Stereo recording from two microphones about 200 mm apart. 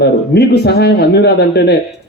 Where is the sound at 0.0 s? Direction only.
55° left (ahead or behind).